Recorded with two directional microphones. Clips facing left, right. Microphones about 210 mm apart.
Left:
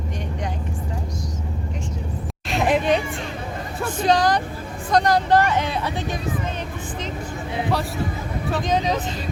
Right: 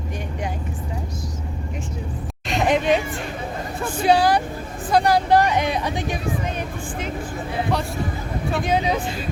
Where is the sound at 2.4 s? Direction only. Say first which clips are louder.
Even; centre (ahead or behind).